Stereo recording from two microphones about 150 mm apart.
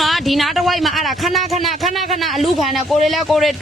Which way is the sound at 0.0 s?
Centre (ahead or behind).